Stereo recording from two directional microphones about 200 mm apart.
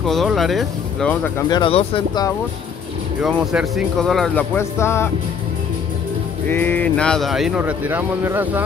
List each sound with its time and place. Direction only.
0.0 s speech: centre (ahead or behind)
1.5 s speech: 25° left (ahead or behind)
3.2 s speech: centre (ahead or behind)
4.6 s music: 15° left (ahead or behind)
6.5 s speech: 10° left (ahead or behind); by 8.6 s 10° right (ahead or behind)